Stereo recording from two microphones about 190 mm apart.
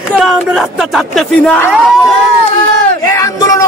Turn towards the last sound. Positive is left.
turn(degrees=20)  # may be behind; listen again after turning